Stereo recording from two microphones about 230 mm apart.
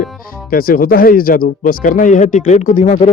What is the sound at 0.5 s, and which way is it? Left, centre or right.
Speech, left.